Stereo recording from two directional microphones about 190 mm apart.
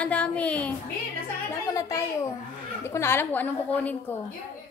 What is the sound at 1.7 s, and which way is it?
A woman's voice, 15° left (ahead or behind).